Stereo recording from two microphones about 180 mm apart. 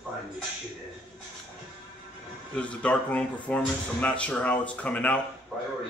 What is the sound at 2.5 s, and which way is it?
Speech, 5° left (ahead or behind).